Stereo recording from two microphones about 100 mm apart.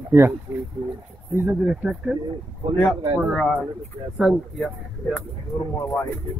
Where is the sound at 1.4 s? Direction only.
10° right (ahead or behind).